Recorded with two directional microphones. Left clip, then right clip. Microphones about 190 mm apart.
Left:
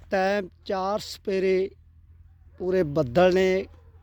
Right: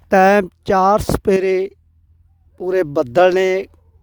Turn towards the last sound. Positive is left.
turn(degrees=-40)  # may be behind; listen again after turning